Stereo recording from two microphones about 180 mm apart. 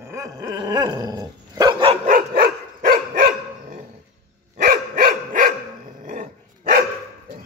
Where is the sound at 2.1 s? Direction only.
50° right (ahead or behind).